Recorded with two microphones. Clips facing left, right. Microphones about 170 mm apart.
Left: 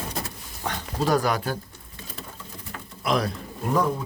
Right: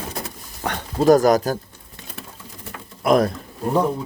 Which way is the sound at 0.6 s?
55° right (ahead or behind).